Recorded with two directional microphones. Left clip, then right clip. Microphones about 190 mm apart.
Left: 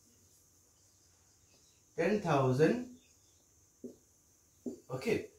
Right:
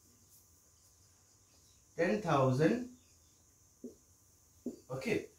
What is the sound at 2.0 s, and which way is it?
Speech, 5° right (ahead or behind).